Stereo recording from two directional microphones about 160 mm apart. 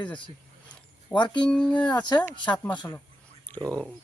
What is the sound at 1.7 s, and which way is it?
Speech, 30° left (ahead or behind).